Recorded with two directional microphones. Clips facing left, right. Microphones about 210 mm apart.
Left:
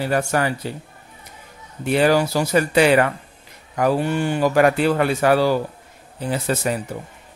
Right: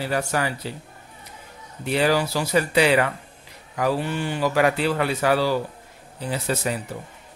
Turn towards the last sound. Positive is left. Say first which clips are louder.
# left 3 dB
turn(degrees=50)  # may be behind; listen again after turning